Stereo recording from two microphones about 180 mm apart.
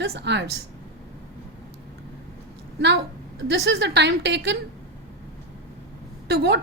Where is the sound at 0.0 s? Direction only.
70° right (ahead or behind).